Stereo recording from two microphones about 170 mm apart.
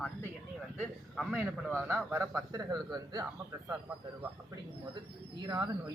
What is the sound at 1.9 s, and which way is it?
Speech, 15° right (ahead or behind).